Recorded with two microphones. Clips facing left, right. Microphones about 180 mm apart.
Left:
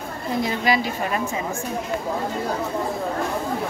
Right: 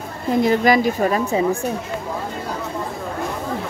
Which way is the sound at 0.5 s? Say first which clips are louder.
Right 7 dB; 45° right (ahead or behind).